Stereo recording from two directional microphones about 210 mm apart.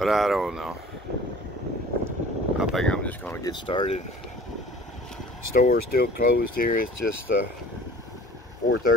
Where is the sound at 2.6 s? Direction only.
Centre (ahead or behind); by 4.0 s 25° left (ahead or behind).